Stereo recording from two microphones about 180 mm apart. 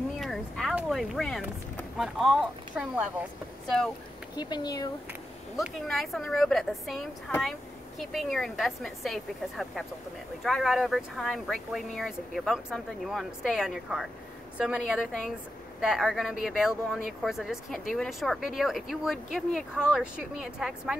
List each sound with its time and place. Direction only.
0.2 s a sound: centre (ahead or behind)
0.7 s speech: centre (ahead or behind)
4.4 s speech: 25° left (ahead or behind)
5.6 s speech: centre (ahead or behind)